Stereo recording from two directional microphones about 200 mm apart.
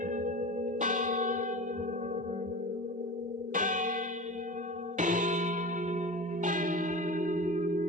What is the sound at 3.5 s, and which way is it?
Music, 40° right (ahead or behind).